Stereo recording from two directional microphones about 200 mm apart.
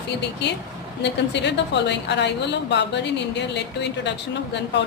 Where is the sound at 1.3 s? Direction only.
60° left (ahead or behind).